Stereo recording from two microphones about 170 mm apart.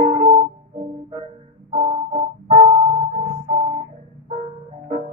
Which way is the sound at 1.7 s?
35° right (ahead or behind).